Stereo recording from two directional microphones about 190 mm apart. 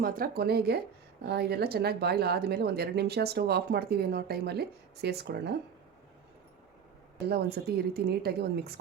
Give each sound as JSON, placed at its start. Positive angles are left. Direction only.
{"t": 0.0, "sound": "speech", "side_deg": -50}
{"t": 7.3, "sound": "speech", "side_deg": -55}